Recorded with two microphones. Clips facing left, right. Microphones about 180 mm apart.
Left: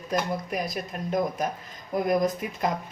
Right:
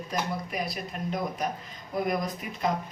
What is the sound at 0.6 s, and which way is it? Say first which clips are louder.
Speech: left 2 dB; 45° left (ahead or behind).